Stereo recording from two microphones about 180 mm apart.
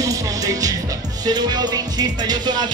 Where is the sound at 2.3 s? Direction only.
25° right (ahead or behind).